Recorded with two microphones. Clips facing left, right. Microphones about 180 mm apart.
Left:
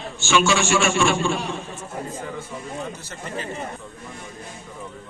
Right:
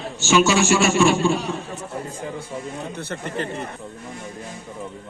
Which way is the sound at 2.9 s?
60° right (ahead or behind).